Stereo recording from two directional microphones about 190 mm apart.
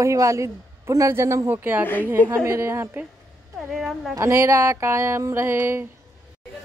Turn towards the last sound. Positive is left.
turn(degrees=-10)  # may be behind; listen again after turning